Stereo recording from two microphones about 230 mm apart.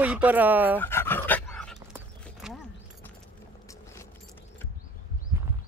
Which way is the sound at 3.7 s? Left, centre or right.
Centre.